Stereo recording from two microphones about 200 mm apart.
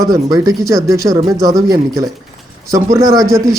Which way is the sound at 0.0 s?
20° right (ahead or behind).